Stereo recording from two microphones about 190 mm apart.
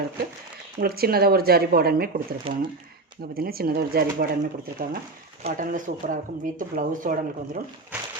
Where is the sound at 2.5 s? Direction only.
30° right (ahead or behind).